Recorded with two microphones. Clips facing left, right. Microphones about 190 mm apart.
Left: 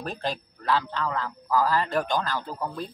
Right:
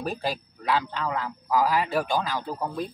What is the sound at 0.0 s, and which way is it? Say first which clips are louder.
Speech: right 2 dB; 10° right (ahead or behind).